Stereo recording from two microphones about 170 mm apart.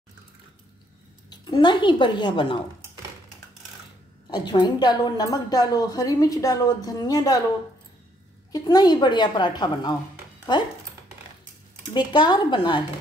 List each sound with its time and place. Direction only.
1.3 s a woman's voice: 25° left (ahead or behind)
4.3 s a woman's voice: 25° left (ahead or behind)
8.5 s a woman's voice: 20° left (ahead or behind)
11.9 s a woman's voice: 25° left (ahead or behind)